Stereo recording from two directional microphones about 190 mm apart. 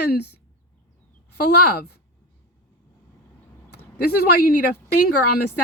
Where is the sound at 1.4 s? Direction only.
55° left (ahead or behind).